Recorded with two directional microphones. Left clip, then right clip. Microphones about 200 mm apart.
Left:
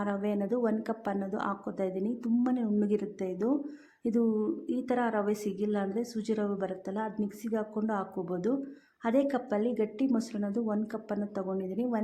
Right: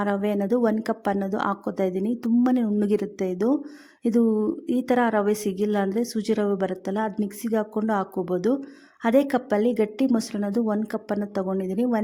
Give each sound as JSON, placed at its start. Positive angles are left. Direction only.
{"t": 0.0, "sound": "a woman's voice", "side_deg": -45}